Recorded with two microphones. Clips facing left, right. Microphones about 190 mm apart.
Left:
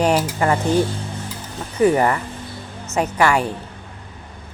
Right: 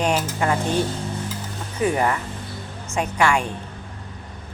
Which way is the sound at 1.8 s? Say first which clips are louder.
Left 6 dB; 50° left (ahead or behind).